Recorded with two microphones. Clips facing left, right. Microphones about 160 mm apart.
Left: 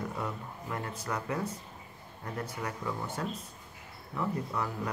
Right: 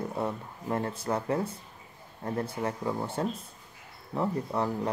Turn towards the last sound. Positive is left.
turn(degrees=-30)  # may be behind; listen again after turning